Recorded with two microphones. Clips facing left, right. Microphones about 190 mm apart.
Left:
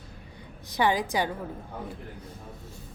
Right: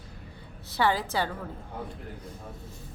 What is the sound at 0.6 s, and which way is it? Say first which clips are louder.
Speech: left 1 dB; 15° left (ahead or behind).